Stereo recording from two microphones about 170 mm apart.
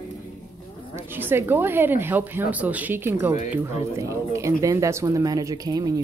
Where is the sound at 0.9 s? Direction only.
10° right (ahead or behind).